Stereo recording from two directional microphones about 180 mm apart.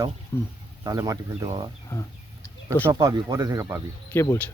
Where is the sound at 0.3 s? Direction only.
15° left (ahead or behind).